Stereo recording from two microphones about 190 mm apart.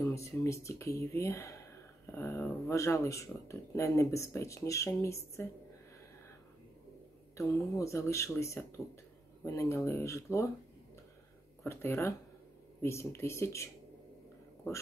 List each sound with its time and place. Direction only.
0.0 s speech: 15° left (ahead or behind)
7.7 s speech: 15° left (ahead or behind)
11.6 s speech: 15° left (ahead or behind)